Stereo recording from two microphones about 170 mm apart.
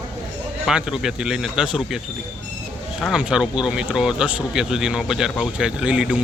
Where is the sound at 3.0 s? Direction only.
Centre (ahead or behind).